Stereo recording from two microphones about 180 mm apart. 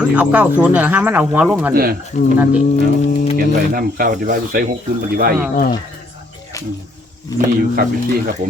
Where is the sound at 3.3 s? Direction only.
50° right (ahead or behind).